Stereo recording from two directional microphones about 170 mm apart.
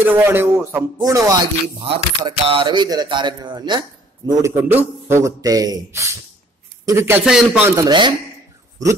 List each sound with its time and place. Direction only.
0.0 s music: 10° right (ahead or behind); by 3.8 s 25° right (ahead or behind)
4.3 s a man's voice: 15° right (ahead or behind)
7.7 s music: 25° right (ahead or behind)